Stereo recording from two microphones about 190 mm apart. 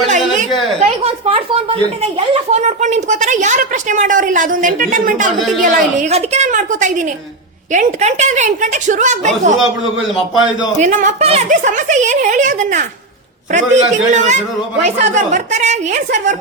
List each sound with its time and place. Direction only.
0.8 s speech: 35° right (ahead or behind)
10.8 s speech: 40° right (ahead or behind)